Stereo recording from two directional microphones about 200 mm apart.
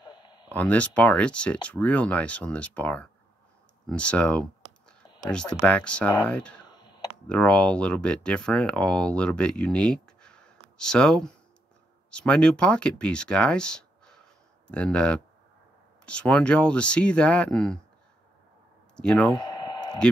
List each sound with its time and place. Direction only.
0.0 s a sound: 20° left (ahead or behind)
0.5 s speech: 5° left (ahead or behind)
3.8 s computer keyboard: 5° left (ahead or behind)
5.2 s speech: 5° left (ahead or behind)
6.6 s computer keyboard: 20° left (ahead or behind)
7.2 s speech: 5° left (ahead or behind)
18.9 s speech: 5° left (ahead or behind)
19.3 s a sound: 20° left (ahead or behind)